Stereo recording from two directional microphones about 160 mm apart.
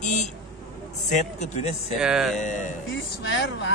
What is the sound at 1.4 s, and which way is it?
Speech, 45° left (ahead or behind).